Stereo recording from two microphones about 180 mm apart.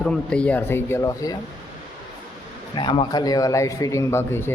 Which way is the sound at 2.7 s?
25° left (ahead or behind).